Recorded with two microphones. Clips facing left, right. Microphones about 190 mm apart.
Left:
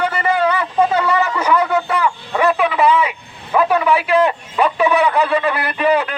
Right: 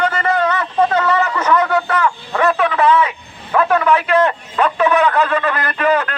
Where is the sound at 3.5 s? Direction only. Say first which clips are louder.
Even; 10° left (ahead or behind).